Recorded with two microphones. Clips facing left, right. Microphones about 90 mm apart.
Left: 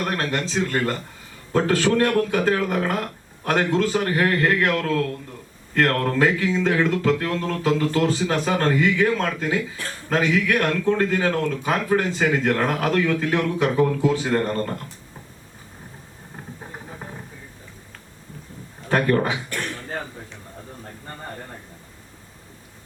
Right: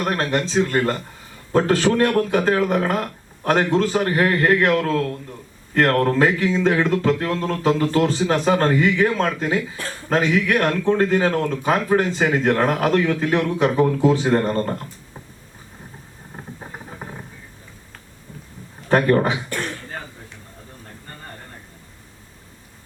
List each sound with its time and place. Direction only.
0.0 s speech: 30° right (ahead or behind)
18.9 s speech: 30° right (ahead or behind)